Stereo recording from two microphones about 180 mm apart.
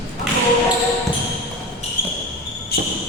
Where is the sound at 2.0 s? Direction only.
50° left (ahead or behind).